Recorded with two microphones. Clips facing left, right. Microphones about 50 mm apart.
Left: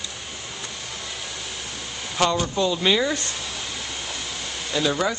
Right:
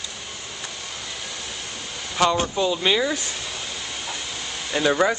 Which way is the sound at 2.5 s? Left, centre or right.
Centre.